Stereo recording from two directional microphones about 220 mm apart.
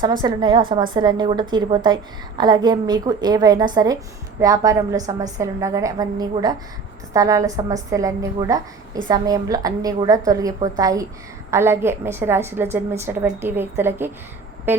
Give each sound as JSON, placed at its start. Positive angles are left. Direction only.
{"t": 0.2, "sound": "a woman's voice", "side_deg": -20}